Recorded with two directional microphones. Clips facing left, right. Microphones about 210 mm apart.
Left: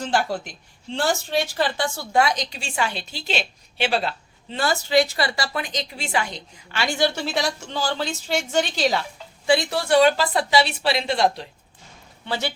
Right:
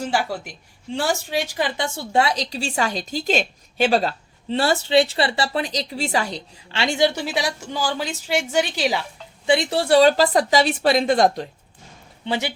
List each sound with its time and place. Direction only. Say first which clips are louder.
0.0 s speech: even; 10° right (ahead or behind); by 4.1 s 40° right (ahead or behind)
4.5 s a woman's voice: right 3 dB; 30° right (ahead or behind); by 9.0 s 10° right (ahead or behind)
9.5 s speech: right 2 dB; 25° right (ahead or behind); by 11.4 s 45° right (ahead or behind)
12.2 s speech: right 2 dB; 15° right (ahead or behind)